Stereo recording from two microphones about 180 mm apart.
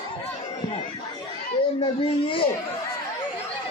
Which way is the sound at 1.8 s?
30° left (ahead or behind).